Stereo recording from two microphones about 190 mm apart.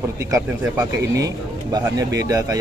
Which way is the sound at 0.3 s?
15° right (ahead or behind).